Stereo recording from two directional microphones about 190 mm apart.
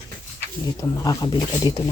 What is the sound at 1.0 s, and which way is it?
Speech, 20° left (ahead or behind).